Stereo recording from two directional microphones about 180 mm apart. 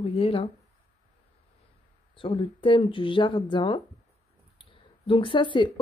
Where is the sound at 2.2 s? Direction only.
30° left (ahead or behind).